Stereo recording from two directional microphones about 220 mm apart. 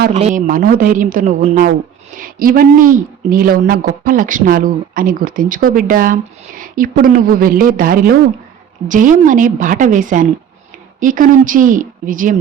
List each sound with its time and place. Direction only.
0.1 s a woman's voice: 30° right (ahead or behind)